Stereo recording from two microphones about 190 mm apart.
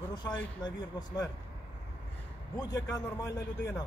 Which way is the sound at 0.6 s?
20° left (ahead or behind).